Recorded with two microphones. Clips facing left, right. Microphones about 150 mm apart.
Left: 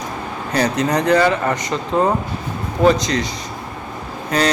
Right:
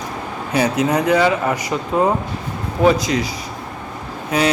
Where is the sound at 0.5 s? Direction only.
5° right (ahead or behind).